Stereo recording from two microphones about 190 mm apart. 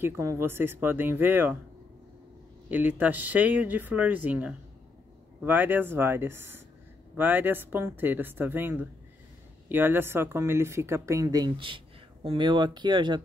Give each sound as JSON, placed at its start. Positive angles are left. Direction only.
{"t": 0.0, "sound": "speech", "side_deg": -15}
{"t": 2.7, "sound": "speech", "side_deg": -10}